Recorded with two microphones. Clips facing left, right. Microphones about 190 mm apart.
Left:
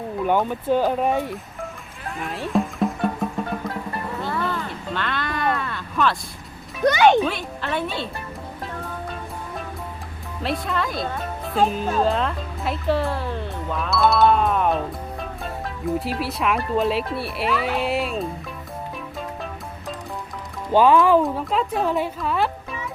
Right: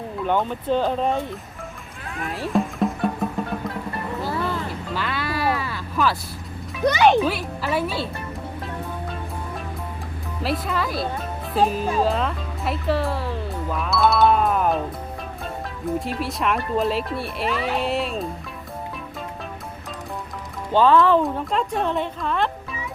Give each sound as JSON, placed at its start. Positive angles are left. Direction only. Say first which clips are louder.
{"t": 0.3, "sound": "speech", "louder": "left 1 dB", "side_deg": 10}
{"t": 2.0, "sound": "music", "louder": "even", "side_deg": 0}
{"t": 4.9, "sound": "speech", "louder": "right 1 dB", "side_deg": -5}
{"t": 10.4, "sound": "speech", "louder": "even", "side_deg": 0}
{"t": 15.9, "sound": "speech", "louder": "left 1 dB", "side_deg": 0}
{"t": 20.7, "sound": "speech", "louder": "left 1 dB", "side_deg": 15}
{"t": 21.2, "sound": "speech", "louder": "left 1 dB", "side_deg": 5}